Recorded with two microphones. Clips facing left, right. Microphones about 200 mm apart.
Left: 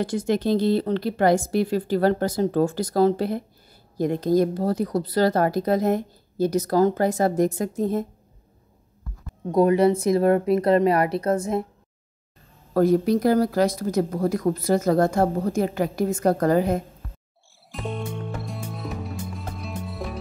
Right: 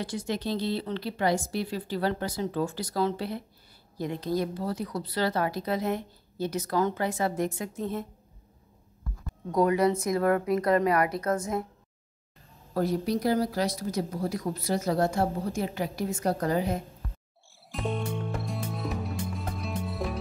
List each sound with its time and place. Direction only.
0.0 s speech: 50° left (ahead or behind)
9.5 s speech: 25° left (ahead or behind)
12.7 s speech: 50° left (ahead or behind)
17.6 s music: centre (ahead or behind)